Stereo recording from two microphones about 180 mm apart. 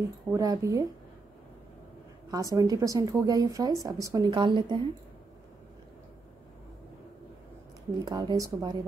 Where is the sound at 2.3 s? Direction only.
20° right (ahead or behind).